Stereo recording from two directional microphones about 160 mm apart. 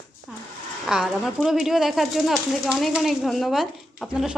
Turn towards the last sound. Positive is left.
turn(degrees=-5)  # may be behind; listen again after turning